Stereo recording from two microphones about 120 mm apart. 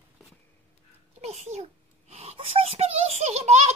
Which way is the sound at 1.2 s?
70° right (ahead or behind).